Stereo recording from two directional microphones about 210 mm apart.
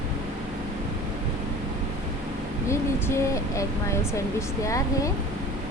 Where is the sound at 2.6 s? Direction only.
15° left (ahead or behind).